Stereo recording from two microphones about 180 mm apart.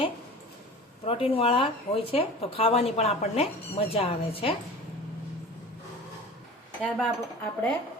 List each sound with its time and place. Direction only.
1.0 s speech: 30° left (ahead or behind)
6.8 s speech: 5° left (ahead or behind)